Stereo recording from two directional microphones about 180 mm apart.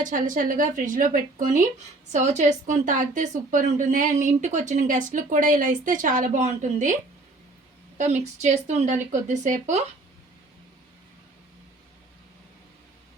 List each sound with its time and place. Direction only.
0.0 s a woman's voice: 45° right (ahead or behind)
8.2 s speech: 40° right (ahead or behind)